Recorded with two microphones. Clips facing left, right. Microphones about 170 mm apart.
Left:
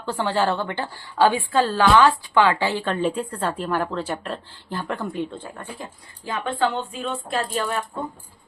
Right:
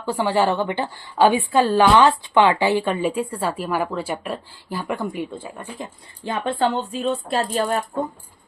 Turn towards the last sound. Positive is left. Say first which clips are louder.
# right 3 dB
turn(degrees=-35)  # may be behind; listen again after turning